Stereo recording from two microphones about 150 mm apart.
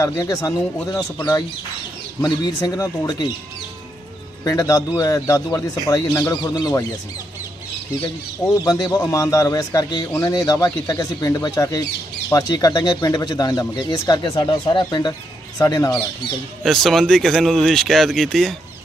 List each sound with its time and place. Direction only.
0.0 s speech: 25° left (ahead or behind)
4.4 s speech: 25° left (ahead or behind)
8.6 s speech: 25° left (ahead or behind)
16.6 s speech: centre (ahead or behind)